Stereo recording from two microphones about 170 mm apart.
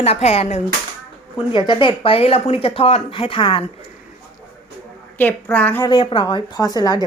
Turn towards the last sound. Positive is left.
turn(degrees=25)  # may be behind; listen again after turning